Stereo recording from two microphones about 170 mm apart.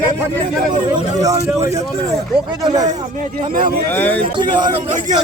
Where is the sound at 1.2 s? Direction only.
20° right (ahead or behind).